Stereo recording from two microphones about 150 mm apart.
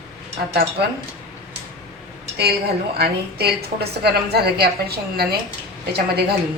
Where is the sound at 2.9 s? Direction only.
90° right.